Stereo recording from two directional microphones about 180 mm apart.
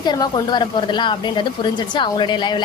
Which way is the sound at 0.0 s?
25° left (ahead or behind).